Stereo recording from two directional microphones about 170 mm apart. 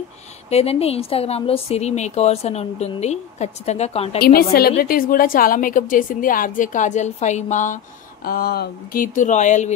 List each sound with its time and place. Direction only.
0.5 s speech: 35° left (ahead or behind)
4.2 s a woman's voice: 60° left (ahead or behind)
8.3 s a woman's voice: 65° left (ahead or behind); by 9.8 s 45° left (ahead or behind)